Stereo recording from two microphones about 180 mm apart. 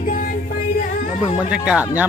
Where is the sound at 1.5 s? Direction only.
5° right (ahead or behind).